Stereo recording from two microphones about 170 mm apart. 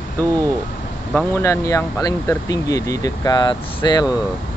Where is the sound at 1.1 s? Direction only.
15° left (ahead or behind).